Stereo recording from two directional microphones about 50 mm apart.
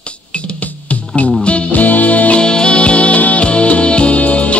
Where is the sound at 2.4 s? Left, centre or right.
Centre.